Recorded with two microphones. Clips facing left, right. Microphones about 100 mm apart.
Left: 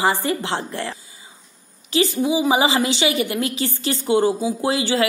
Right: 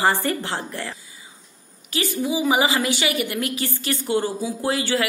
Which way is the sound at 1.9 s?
25° left (ahead or behind).